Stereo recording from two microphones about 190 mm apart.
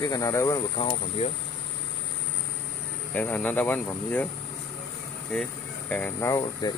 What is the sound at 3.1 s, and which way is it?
Speech, 10° left (ahead or behind).